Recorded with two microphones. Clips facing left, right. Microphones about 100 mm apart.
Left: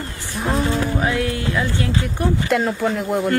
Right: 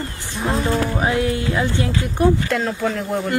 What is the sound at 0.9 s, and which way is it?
Speech, 25° right (ahead or behind).